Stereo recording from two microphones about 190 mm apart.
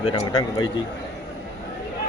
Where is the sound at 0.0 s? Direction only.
25° left (ahead or behind).